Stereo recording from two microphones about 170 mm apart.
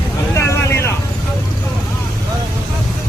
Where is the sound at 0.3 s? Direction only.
15° left (ahead or behind).